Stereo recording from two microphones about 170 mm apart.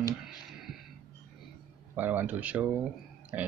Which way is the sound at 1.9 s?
10° right (ahead or behind).